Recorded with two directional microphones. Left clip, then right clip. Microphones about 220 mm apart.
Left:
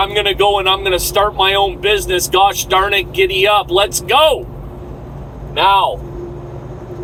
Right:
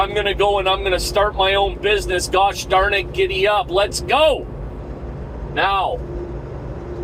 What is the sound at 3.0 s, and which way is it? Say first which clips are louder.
Speech: left 5 dB; 30° right (ahead or behind).